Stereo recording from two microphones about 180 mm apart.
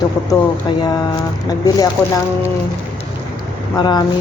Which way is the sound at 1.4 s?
20° left (ahead or behind).